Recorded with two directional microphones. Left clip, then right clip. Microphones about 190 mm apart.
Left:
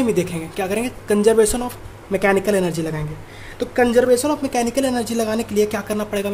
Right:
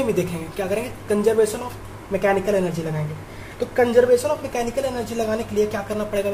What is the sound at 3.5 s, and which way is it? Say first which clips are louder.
A woman's voice: left 1 dB; 55° left (ahead or behind).